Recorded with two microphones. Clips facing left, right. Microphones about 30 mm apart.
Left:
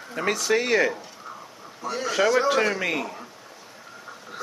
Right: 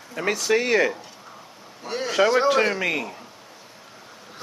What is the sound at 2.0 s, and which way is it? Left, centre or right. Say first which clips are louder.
A child's voice: right 2 dB; centre.